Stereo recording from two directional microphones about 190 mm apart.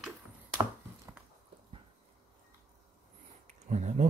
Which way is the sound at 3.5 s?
40° right (ahead or behind).